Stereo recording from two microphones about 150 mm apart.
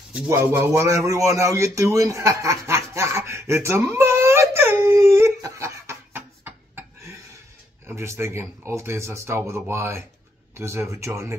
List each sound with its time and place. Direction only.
0.1 s speech: 15° right (ahead or behind)